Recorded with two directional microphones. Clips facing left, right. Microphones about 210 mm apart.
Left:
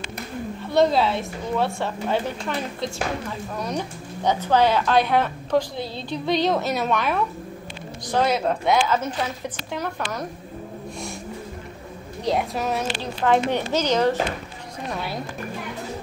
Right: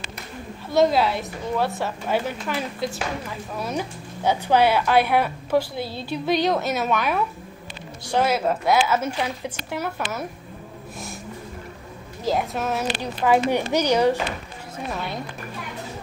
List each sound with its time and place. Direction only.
0.7 s a woman's voice: 5° right (ahead or behind)
12.3 s a woman's voice: centre (ahead or behind)
14.9 s a woman's voice: centre (ahead or behind)